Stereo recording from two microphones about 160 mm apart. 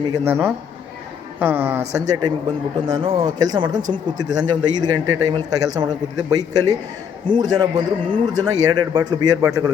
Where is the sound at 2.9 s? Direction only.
25° right (ahead or behind).